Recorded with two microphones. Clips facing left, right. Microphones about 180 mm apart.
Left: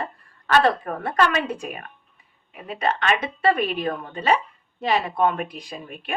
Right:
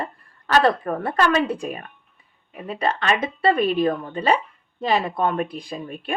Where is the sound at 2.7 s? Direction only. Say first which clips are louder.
Right 1 dB; 35° right (ahead or behind).